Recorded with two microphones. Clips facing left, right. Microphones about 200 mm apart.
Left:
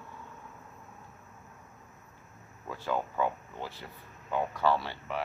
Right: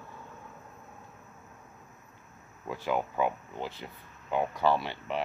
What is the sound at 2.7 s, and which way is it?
Speech, 15° right (ahead or behind).